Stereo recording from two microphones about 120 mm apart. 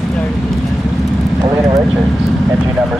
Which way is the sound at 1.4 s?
30° right (ahead or behind).